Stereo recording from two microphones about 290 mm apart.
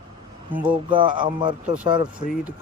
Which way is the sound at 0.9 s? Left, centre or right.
Centre.